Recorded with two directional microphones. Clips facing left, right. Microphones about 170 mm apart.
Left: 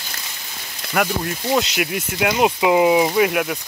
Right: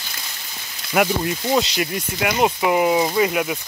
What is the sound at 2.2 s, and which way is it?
Speech, 15° left (ahead or behind).